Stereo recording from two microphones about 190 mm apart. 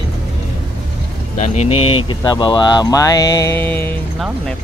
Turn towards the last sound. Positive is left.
turn(degrees=10)  # may be behind; listen again after turning